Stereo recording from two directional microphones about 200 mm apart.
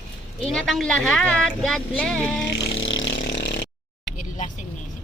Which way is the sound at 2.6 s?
70° left (ahead or behind).